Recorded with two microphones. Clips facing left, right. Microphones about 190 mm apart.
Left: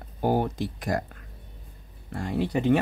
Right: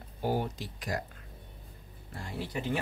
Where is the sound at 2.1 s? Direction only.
60° left (ahead or behind).